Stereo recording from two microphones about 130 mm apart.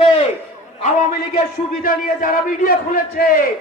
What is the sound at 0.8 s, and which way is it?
A man's voice, 90° left.